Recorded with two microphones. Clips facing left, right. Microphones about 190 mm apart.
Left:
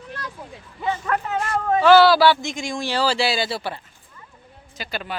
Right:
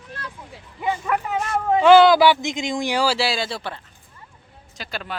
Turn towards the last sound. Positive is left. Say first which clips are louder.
# left 2 dB
turn(degrees=0)  # may be behind; listen again after turning